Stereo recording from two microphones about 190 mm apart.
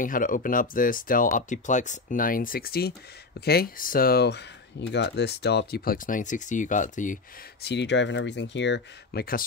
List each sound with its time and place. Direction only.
0.0 s speech: 45° left (ahead or behind)
7.6 s speech: 65° left (ahead or behind)